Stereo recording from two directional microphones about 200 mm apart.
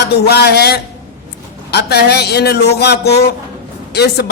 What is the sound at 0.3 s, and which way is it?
Speech, 55° left (ahead or behind).